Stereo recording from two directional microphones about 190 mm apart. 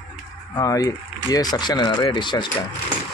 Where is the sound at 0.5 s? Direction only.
20° left (ahead or behind).